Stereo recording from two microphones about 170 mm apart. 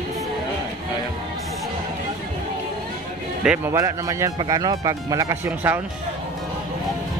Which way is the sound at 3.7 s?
20° right (ahead or behind).